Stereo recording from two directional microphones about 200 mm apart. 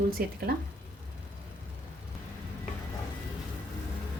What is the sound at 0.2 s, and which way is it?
Speech, 50° right (ahead or behind).